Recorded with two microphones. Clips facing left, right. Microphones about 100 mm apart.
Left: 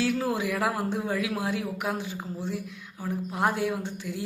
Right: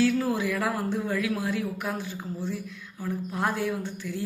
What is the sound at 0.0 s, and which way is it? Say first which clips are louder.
Speech: right 2 dB; 20° left (ahead or behind).